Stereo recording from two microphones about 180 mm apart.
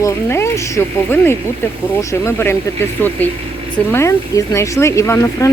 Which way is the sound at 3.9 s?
15° left (ahead or behind).